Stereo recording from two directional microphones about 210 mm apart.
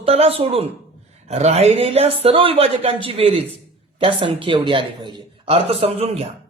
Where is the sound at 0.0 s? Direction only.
30° right (ahead or behind).